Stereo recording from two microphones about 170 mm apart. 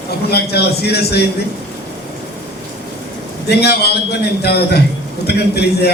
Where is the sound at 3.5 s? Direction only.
70° left (ahead or behind).